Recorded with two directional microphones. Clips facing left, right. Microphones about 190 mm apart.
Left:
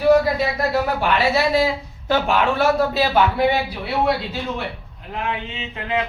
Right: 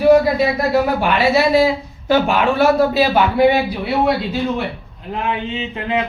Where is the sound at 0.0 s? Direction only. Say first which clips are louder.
Right 4 dB; 15° right (ahead or behind).